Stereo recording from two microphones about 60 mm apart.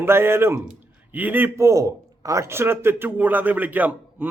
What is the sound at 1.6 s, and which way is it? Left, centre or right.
Speech, right.